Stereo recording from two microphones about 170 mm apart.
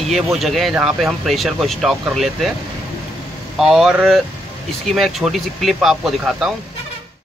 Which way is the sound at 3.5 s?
Centre (ahead or behind).